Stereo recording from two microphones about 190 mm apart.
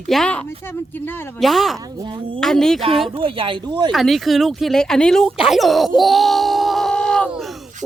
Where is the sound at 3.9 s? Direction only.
Centre (ahead or behind).